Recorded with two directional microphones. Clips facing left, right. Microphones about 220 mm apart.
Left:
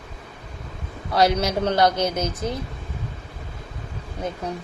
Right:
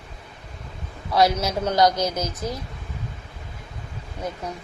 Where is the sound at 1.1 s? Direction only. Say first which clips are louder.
Left 1 dB; 30° left (ahead or behind).